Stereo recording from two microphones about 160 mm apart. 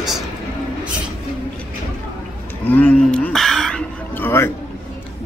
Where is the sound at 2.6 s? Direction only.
10° left (ahead or behind).